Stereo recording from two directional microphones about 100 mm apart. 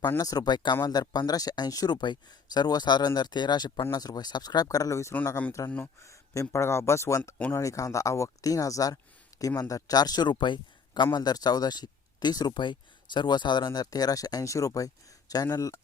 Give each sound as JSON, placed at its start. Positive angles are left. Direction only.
{"t": 0.2, "sound": "speech", "side_deg": 40}